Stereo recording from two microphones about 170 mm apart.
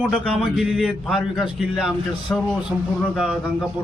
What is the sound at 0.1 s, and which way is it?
A man's voice, centre (ahead or behind).